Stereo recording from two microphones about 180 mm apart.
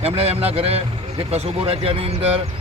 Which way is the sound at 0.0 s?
35° right (ahead or behind).